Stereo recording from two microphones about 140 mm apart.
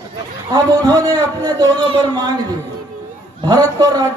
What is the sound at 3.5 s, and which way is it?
Speech, 25° right (ahead or behind).